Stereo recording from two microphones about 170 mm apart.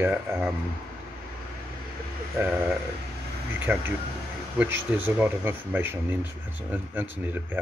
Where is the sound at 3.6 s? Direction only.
10° right (ahead or behind).